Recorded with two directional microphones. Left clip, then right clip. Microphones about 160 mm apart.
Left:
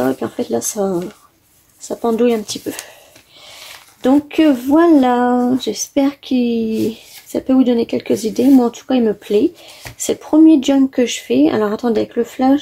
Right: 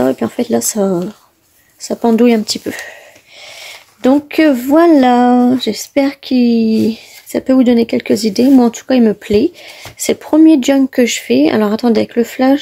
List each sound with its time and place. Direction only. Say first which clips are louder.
0.0 s speech: right 4 dB; 50° right (ahead or behind)
4.0 s speech: right 3 dB; 45° right (ahead or behind)